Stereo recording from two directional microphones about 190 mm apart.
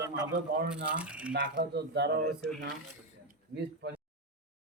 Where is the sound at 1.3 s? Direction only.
50° right (ahead or behind).